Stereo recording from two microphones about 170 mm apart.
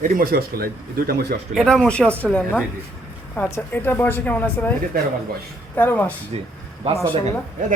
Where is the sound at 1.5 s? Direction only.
Centre (ahead or behind).